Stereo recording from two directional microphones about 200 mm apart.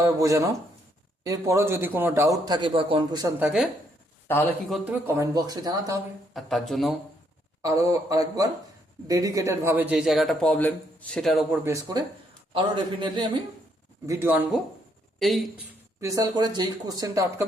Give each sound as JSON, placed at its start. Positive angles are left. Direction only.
{"t": 0.0, "sound": "a man's voice", "side_deg": -15}
{"t": 4.7, "sound": "a man's voice", "side_deg": -10}
{"t": 6.3, "sound": "a man's voice", "side_deg": 0}
{"t": 7.6, "sound": "a man's voice", "side_deg": -15}
{"t": 11.6, "sound": "a man's voice", "side_deg": -15}
{"t": 14.1, "sound": "a man's voice", "side_deg": -10}